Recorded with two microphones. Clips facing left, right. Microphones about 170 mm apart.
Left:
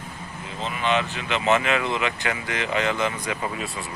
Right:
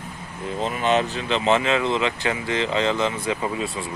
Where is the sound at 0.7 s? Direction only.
40° right (ahead or behind).